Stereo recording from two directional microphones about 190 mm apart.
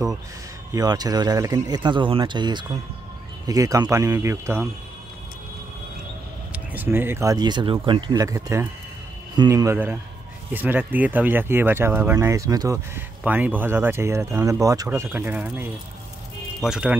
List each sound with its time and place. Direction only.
0.7 s speech: 20° right (ahead or behind)
6.5 s speech: 10° right (ahead or behind)